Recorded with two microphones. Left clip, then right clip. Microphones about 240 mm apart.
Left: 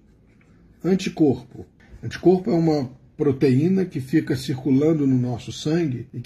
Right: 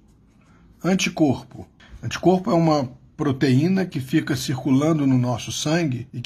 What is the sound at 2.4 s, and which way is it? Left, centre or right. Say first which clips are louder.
Speech: right 2 dB; centre.